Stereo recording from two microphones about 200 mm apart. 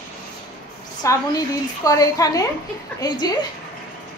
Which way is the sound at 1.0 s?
15° left (ahead or behind).